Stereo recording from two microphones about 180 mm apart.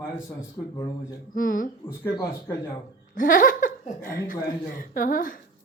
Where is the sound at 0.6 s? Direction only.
15° left (ahead or behind).